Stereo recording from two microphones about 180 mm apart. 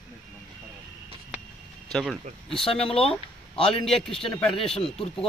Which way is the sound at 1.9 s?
Centre (ahead or behind).